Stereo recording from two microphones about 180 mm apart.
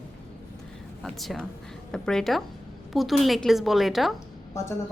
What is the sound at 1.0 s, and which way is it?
A woman's voice, centre (ahead or behind).